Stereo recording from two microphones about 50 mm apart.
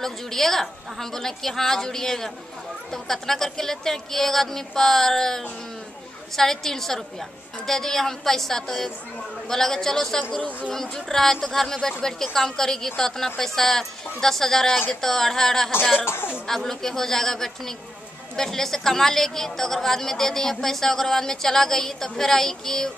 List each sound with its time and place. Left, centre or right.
0.0 s a woman's voice: centre
16.1 s speech: left
16.4 s a woman's voice: centre